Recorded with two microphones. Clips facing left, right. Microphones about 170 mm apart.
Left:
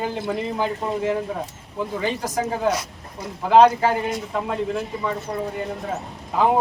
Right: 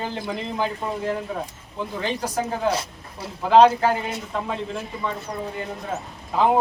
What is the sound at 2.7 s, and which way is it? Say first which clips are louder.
Speech: left 1 dB; 30° right (ahead or behind).